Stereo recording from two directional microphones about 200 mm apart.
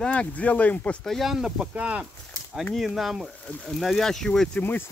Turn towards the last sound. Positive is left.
turn(degrees=5)  # may be behind; listen again after turning